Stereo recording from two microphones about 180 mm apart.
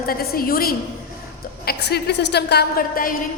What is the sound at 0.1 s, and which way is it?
Speech, 55° left (ahead or behind).